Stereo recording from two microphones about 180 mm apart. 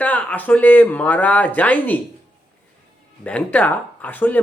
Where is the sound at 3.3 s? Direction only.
10° left (ahead or behind).